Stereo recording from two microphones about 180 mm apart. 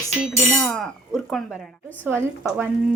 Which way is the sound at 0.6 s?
Centre (ahead or behind).